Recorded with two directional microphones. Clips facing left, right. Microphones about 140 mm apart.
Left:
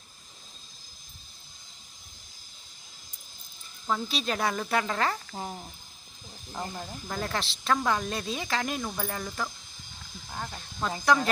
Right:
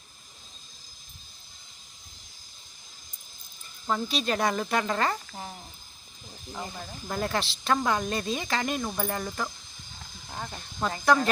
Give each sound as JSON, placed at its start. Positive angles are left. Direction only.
{"t": 3.8, "sound": "speech", "side_deg": 0}
{"t": 5.3, "sound": "speech", "side_deg": 20}
{"t": 6.5, "sound": "speech", "side_deg": 10}
{"t": 7.1, "sound": "speech", "side_deg": 0}